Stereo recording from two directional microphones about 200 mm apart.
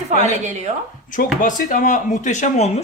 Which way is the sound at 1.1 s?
40° left (ahead or behind).